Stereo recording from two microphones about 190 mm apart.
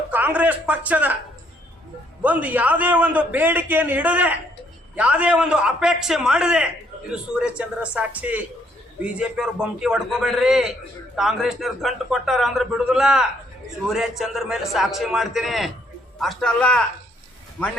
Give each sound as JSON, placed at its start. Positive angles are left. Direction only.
{"t": 0.1, "sound": "a man's voice", "side_deg": -10}
{"t": 2.2, "sound": "a man's voice", "side_deg": -10}